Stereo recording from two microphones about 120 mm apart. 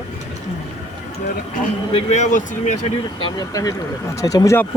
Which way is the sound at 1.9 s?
75° left (ahead or behind).